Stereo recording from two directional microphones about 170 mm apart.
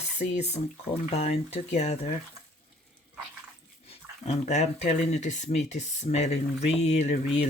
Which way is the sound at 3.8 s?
35° left (ahead or behind).